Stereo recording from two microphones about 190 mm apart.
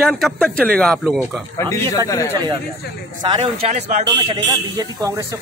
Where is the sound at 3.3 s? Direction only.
35° right (ahead or behind).